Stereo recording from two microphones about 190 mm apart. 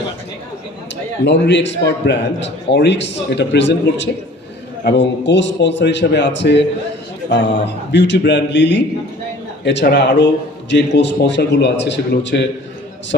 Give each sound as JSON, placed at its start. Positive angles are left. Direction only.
{"t": 1.2, "sound": "a man's voice", "side_deg": 70}
{"t": 7.9, "sound": "a man's voice", "side_deg": 65}